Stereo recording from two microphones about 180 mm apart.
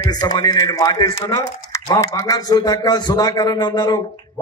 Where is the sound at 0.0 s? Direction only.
20° left (ahead or behind).